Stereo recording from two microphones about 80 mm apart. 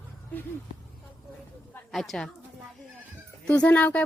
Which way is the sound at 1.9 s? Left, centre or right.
Centre.